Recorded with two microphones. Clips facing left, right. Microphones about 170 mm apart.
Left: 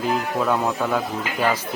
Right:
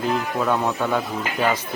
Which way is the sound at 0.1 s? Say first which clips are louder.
Left 1 dB; 5° left (ahead or behind).